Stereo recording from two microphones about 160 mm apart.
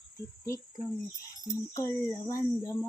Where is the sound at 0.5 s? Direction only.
20° left (ahead or behind).